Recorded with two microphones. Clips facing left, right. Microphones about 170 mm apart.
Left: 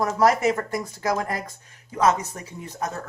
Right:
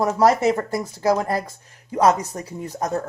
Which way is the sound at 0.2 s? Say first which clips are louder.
Right 2 dB; 30° right (ahead or behind).